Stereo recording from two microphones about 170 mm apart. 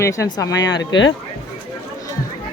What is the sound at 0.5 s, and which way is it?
Speech, 90° left.